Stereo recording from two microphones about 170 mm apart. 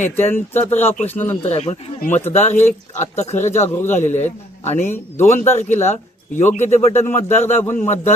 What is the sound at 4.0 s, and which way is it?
Speech, 45° left (ahead or behind).